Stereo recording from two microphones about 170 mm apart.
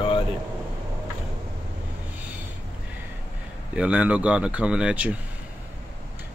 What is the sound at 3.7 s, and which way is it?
Speech, 5° right (ahead or behind).